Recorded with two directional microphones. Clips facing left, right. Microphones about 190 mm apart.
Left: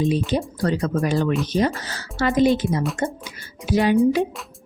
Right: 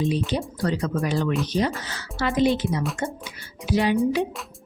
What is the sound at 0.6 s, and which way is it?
Speech, 55° left (ahead or behind).